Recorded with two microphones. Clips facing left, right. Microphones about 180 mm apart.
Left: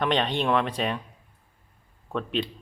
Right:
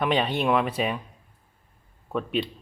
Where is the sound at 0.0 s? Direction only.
5° right (ahead or behind).